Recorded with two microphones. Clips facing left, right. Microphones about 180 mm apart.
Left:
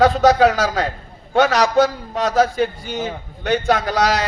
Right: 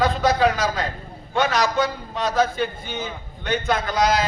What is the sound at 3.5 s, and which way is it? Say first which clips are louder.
Speech: left 5 dB; 70° left (ahead or behind).